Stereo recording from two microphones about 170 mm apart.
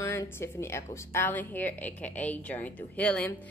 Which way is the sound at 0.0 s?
15° left (ahead or behind).